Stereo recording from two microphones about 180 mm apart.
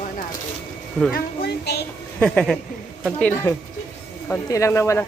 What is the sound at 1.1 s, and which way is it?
Speech, 65° left (ahead or behind).